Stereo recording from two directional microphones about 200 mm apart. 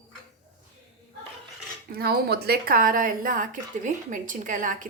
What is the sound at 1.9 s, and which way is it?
Speech, 50° right (ahead or behind).